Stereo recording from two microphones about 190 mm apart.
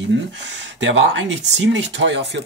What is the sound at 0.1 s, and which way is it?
Speech, 70° right (ahead or behind).